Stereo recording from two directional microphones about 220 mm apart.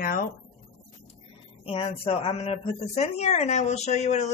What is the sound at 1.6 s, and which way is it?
Speech, 25° left (ahead or behind).